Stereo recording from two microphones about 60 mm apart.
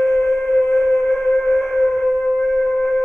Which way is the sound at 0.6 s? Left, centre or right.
Left.